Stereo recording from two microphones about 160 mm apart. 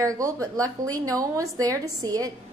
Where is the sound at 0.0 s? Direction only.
20° right (ahead or behind).